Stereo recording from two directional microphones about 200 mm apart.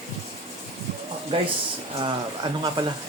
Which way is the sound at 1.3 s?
25° right (ahead or behind).